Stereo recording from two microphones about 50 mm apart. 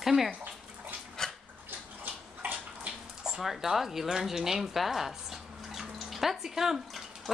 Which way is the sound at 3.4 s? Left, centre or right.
Centre.